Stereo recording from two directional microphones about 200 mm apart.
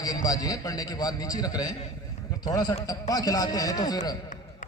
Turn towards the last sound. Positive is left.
turn(degrees=20)  # may be behind; listen again after turning